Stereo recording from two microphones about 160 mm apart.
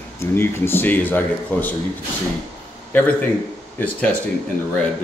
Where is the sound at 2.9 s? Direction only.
10° left (ahead or behind).